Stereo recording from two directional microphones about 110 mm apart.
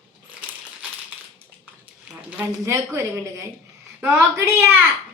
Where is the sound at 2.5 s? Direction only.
25° right (ahead or behind).